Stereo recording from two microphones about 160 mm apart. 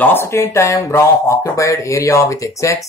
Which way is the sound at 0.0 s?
15° left (ahead or behind).